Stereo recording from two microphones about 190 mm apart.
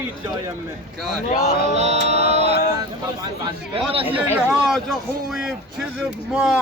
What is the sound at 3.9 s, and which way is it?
Speech, 30° right (ahead or behind).